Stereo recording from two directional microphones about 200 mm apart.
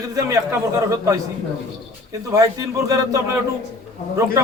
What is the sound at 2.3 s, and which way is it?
A man's voice, 15° right (ahead or behind).